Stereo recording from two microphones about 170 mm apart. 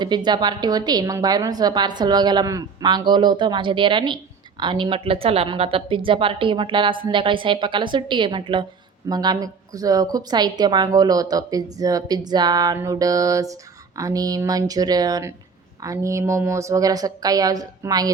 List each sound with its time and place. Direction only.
0.0 s a woman's voice: 25° right (ahead or behind)